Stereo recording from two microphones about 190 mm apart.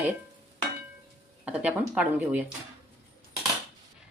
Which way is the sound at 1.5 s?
5° right (ahead or behind).